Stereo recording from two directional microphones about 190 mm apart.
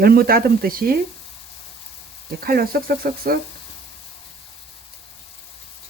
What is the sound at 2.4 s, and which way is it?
Speech, 50° right (ahead or behind).